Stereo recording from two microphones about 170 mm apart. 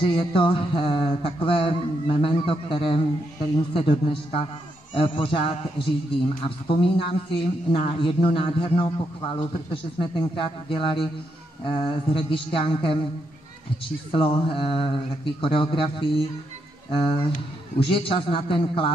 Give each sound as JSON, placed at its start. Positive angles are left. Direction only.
{"t": 0.0, "sound": "speech", "side_deg": 35}
{"t": 14.1, "sound": "speech", "side_deg": 30}
{"t": 17.8, "sound": "speech", "side_deg": 30}